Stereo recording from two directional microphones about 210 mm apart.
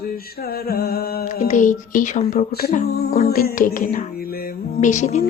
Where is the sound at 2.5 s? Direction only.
50° left (ahead or behind).